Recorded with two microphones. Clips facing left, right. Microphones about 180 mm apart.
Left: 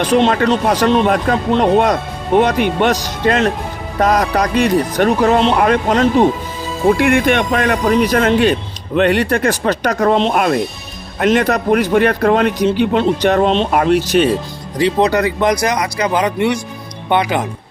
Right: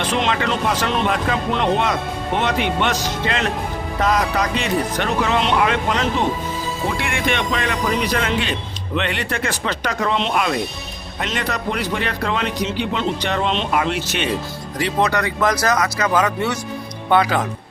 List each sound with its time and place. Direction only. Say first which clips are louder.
0.2 s a man's voice: left 7 dB; 40° left (ahead or behind)
14.8 s speech: left 6 dB; 25° left (ahead or behind)